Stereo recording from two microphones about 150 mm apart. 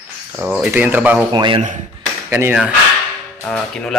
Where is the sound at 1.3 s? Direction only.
30° right (ahead or behind).